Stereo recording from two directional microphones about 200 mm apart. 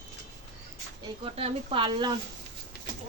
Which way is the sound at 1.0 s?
25° right (ahead or behind).